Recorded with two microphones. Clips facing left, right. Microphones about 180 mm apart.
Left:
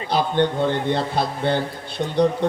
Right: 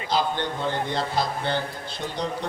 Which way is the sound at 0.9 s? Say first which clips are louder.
Left 3 dB; 55° left (ahead or behind).